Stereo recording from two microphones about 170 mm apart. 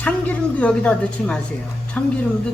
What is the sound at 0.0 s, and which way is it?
A woman's voice, 5° left (ahead or behind).